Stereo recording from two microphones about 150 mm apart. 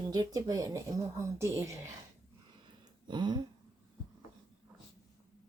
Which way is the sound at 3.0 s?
30° right (ahead or behind).